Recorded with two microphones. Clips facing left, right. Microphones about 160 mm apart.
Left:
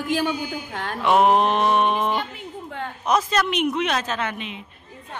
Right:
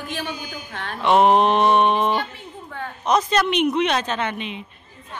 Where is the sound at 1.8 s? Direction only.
30° right (ahead or behind).